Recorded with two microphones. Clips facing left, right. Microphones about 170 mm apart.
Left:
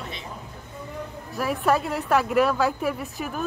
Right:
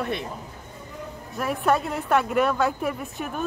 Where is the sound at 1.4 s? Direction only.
Centre (ahead or behind).